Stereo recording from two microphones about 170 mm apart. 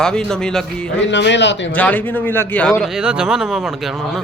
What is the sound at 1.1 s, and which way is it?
Speech, 90° left.